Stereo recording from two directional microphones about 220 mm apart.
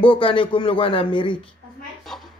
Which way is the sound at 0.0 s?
25° left (ahead or behind).